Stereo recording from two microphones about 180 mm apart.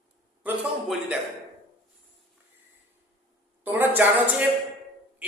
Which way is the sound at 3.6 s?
10° right (ahead or behind).